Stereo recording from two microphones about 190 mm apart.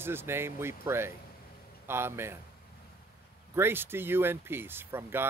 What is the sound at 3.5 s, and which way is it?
Speech, 10° right (ahead or behind).